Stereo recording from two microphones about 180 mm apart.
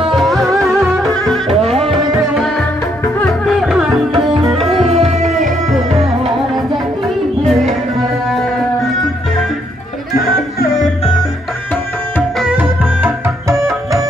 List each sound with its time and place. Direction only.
0.1 s music: centre (ahead or behind)
1.6 s music: 35° right (ahead or behind)
2.3 s music: centre (ahead or behind)
4.1 s music: 30° right (ahead or behind)
12.4 s music: 5° right (ahead or behind)